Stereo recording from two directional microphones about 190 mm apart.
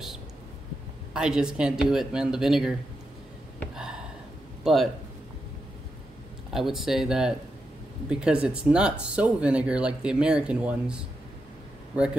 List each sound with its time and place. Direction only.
1.1 s speech: 5° right (ahead or behind)
4.6 s speech: centre (ahead or behind)
6.5 s speech: centre (ahead or behind)